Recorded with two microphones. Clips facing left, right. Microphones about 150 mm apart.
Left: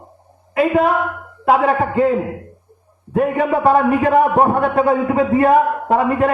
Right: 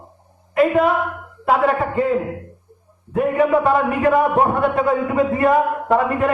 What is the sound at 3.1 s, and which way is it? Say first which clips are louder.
A man's voice: even; 35° left (ahead or behind).